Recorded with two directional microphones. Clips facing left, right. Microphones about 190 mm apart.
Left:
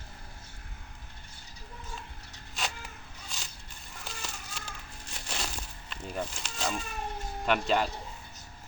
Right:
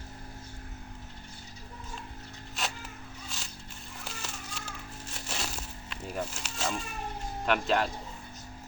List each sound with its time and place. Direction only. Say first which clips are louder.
2.6 s a sound: even; centre (ahead or behind)
4.0 s fowl: even; centre (ahead or behind)
5.1 s insect: even; centre (ahead or behind)
7.4 s speech: even; centre (ahead or behind)